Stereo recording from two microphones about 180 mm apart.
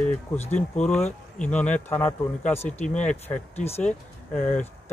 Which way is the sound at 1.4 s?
5° left (ahead or behind).